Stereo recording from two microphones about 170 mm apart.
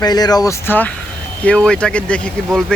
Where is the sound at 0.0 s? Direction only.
25° left (ahead or behind).